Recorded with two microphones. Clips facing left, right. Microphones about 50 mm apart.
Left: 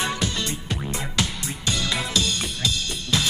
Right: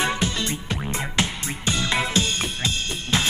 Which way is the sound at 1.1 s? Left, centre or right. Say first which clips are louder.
Right 2 dB; right.